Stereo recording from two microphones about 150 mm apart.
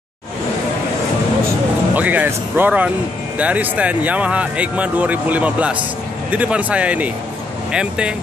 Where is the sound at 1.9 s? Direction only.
10° right (ahead or behind).